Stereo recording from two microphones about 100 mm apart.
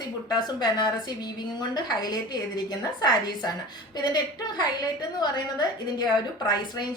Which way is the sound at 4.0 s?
45° left (ahead or behind).